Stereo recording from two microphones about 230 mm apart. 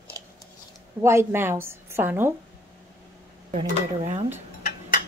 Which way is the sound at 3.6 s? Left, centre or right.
Right.